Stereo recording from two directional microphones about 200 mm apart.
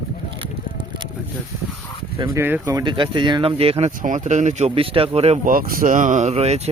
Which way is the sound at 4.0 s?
40° right (ahead or behind).